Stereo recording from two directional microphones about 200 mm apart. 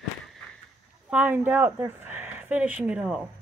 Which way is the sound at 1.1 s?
10° right (ahead or behind).